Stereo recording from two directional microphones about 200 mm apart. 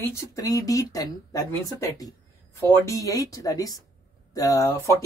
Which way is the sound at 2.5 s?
15° left (ahead or behind).